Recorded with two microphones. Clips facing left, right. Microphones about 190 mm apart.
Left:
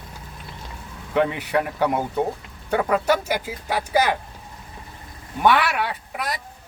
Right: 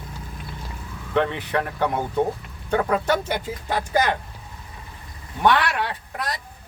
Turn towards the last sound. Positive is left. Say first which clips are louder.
# left 1 dB
turn(degrees=10)  # may be behind; listen again after turning